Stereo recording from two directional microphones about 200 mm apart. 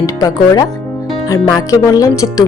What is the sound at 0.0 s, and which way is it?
Speech, 20° left (ahead or behind).